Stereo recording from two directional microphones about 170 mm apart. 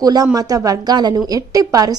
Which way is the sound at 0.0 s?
20° right (ahead or behind).